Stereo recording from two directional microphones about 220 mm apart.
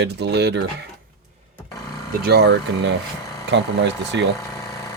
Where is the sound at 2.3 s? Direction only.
50° right (ahead or behind).